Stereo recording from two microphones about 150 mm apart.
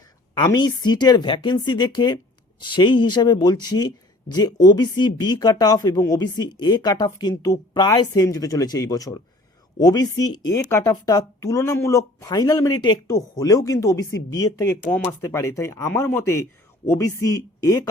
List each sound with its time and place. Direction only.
0.3 s speech: 30° left (ahead or behind)